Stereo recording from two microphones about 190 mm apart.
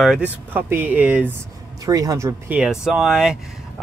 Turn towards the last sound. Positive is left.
turn(degrees=-5)  # may be behind; listen again after turning